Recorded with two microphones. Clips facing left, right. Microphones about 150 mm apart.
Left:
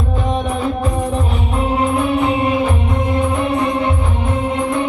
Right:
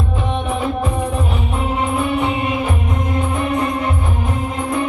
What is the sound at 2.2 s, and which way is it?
Music, 30° left (ahead or behind).